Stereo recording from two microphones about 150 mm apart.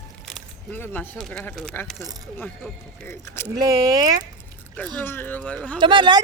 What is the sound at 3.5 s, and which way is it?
Speech, 25° right (ahead or behind).